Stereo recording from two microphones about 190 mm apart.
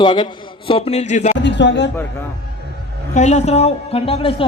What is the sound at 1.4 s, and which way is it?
Speech, 70° left (ahead or behind).